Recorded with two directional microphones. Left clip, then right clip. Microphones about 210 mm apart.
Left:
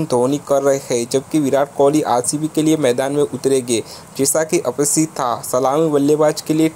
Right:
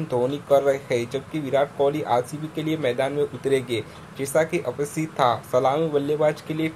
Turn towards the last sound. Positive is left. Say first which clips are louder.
# left 8 dB
turn(degrees=35)  # may be behind; listen again after turning